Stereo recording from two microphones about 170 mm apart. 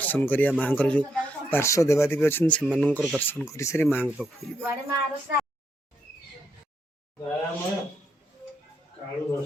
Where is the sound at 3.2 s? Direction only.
10° left (ahead or behind).